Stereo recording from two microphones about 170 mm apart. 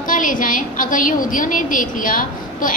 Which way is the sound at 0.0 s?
50° left (ahead or behind).